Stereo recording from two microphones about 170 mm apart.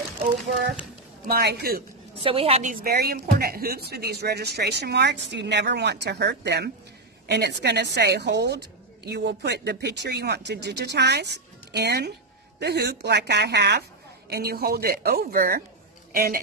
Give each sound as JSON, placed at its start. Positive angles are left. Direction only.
{"t": 1.2, "sound": "speech", "side_deg": -65}
{"t": 2.1, "sound": "a woman's voice", "side_deg": -30}
{"t": 2.7, "sound": "a woman's voice", "side_deg": -60}